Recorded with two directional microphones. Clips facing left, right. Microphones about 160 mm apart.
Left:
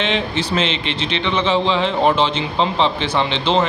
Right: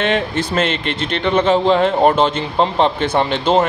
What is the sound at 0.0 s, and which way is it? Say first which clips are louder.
Speech: right 3 dB; 50° right (ahead or behind).